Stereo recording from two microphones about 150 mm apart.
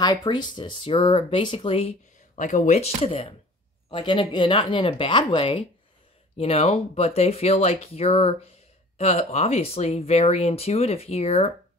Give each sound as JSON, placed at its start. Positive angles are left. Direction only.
{"t": 0.0, "sound": "speech", "side_deg": 25}
{"t": 2.3, "sound": "speech", "side_deg": 60}